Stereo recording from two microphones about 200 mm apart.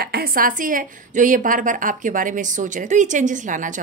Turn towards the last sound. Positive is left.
turn(degrees=-40)  # may be behind; listen again after turning